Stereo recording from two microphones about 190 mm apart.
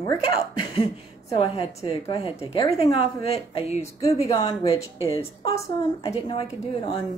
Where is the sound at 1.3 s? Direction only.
30° left (ahead or behind).